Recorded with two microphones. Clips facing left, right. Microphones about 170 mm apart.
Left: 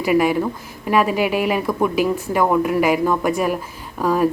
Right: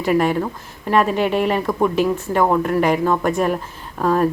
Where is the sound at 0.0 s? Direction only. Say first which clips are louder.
Left 1 dB; 10° left (ahead or behind).